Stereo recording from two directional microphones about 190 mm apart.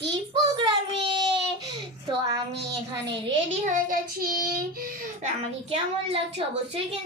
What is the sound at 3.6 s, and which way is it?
Child singing, 45° right (ahead or behind).